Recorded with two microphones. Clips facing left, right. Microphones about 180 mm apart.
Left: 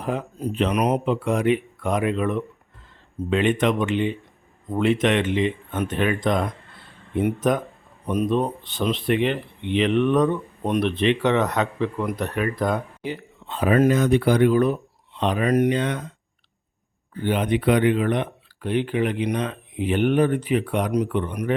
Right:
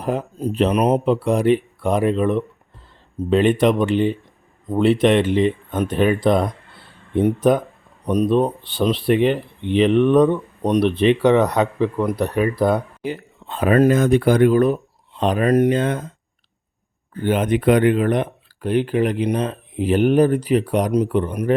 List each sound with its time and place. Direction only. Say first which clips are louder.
0.0 s speech: right 4 dB; 40° right (ahead or behind)
15.4 s speech: right 4 dB; 30° right (ahead or behind)
15.7 s speech: right 4 dB; 45° right (ahead or behind)
17.2 s speech: right 3 dB; 45° right (ahead or behind)